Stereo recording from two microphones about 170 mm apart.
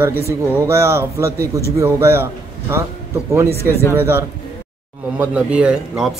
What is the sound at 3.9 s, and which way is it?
A man's voice, 15° right (ahead or behind).